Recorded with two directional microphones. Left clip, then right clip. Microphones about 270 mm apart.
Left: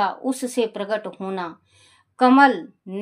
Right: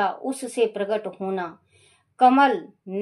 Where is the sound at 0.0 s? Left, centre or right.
Left.